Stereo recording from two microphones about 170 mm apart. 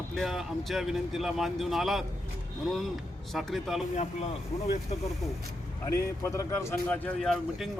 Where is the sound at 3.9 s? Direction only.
40° left (ahead or behind).